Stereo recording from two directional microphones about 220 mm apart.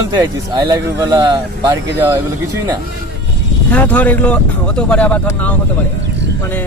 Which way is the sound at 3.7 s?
5° left (ahead or behind).